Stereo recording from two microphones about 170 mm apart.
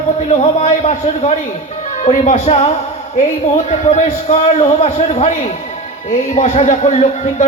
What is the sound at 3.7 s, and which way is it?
A man's voice, 40° left (ahead or behind).